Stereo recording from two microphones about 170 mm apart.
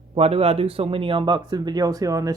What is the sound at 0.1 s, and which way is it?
Speech, 35° right (ahead or behind).